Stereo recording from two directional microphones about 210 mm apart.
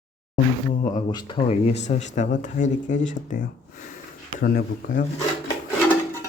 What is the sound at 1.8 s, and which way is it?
Speech, 35° left (ahead or behind).